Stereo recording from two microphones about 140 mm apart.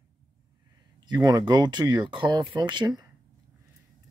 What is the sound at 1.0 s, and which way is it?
Speech, 30° right (ahead or behind).